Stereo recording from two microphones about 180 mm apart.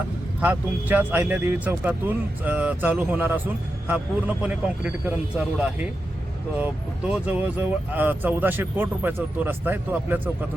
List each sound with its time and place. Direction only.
0.4 s speech: 10° right (ahead or behind)